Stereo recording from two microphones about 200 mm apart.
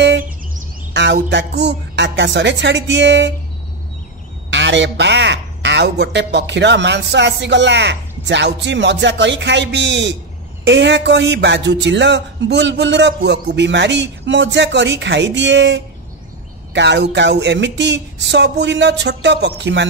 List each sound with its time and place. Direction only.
1.3 s a man's voice: 60° right (ahead or behind)
4.5 s a man's voice: 65° right (ahead or behind)